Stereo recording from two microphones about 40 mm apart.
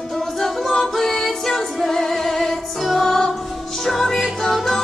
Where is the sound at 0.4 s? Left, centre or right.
Centre.